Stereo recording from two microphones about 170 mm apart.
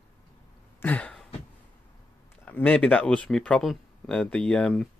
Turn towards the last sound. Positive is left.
turn(degrees=5)  # may be behind; listen again after turning